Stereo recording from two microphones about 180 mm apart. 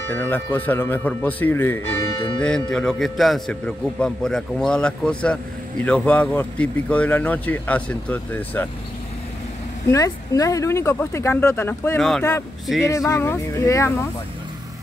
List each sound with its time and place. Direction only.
0.1 s a man's voice: 10° left (ahead or behind)
9.8 s speech: 20° left (ahead or behind)